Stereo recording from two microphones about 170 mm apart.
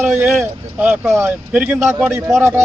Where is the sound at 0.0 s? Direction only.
10° right (ahead or behind).